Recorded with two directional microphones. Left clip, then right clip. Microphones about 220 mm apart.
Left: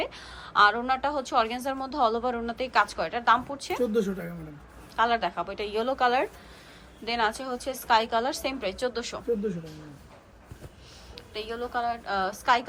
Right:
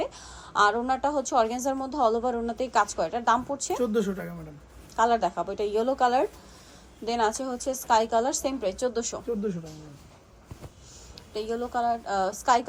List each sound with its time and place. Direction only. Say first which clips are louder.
0.0 s a woman's voice: right 1 dB; 15° right (ahead or behind)
3.8 s speech: left 2 dB; centre (ahead or behind)
4.9 s a woman's voice: right 2 dB; 20° right (ahead or behind)
11.1 s a woman's voice: right 4 dB; 15° right (ahead or behind)